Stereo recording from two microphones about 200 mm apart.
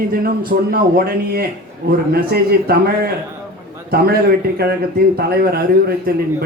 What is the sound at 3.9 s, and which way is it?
Speech, 50° right (ahead or behind).